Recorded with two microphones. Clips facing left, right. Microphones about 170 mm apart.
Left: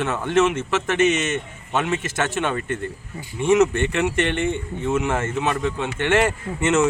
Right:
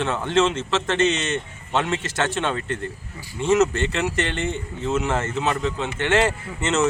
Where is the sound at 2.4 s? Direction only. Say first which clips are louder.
Left 1 dB; 15° left (ahead or behind).